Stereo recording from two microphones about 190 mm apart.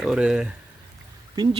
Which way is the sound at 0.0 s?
5° right (ahead or behind).